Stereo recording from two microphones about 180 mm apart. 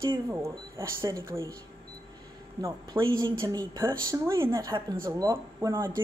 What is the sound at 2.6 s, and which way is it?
Speech, 15° right (ahead or behind).